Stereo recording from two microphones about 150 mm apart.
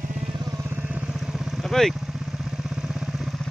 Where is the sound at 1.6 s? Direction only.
Centre (ahead or behind).